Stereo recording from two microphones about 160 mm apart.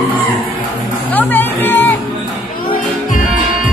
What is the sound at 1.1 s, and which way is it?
Music, 10° left (ahead or behind).